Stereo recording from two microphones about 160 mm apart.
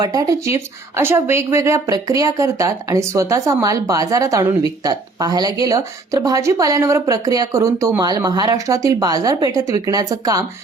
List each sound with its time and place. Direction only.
0.0 s speech: 20° right (ahead or behind)